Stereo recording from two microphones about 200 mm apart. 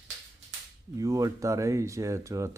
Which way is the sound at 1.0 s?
15° right (ahead or behind).